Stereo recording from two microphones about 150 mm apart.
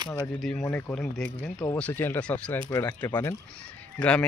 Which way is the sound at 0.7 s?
5° left (ahead or behind).